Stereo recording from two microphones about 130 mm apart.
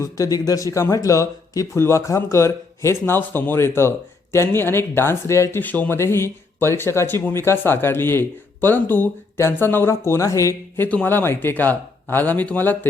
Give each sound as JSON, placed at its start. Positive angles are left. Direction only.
{"t": 0.0, "sound": "speech", "side_deg": 25}
{"t": 10.8, "sound": "speech", "side_deg": 15}